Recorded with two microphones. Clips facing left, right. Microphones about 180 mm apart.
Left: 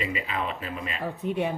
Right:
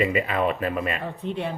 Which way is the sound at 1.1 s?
10° left (ahead or behind).